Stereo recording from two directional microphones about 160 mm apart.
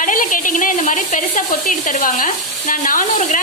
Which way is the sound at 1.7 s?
55° left (ahead or behind).